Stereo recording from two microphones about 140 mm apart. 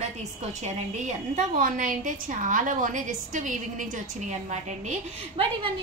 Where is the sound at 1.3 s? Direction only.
70° right (ahead or behind); by 4.9 s 55° right (ahead or behind).